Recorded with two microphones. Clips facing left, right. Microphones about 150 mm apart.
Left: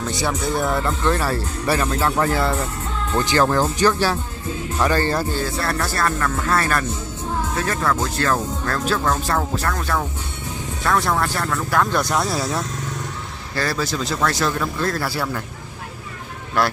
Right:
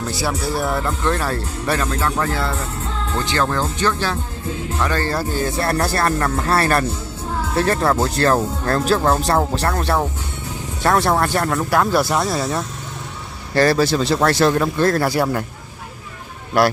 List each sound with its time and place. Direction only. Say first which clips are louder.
0.0 s speech: even; 5° right (ahead or behind)
1.9 s speech: left 1 dB; 15° left (ahead or behind); by 5.3 s centre (ahead or behind)
5.3 s speech: right 3 dB; 25° right (ahead or behind)
5.8 s speech: right 3 dB; 40° right (ahead or behind)
11.7 s speech: right 2 dB; 10° right (ahead or behind)
13.6 s a man's voice: right 8 dB; 65° right (ahead or behind)
15.1 s speech: right 6 dB; 35° right (ahead or behind)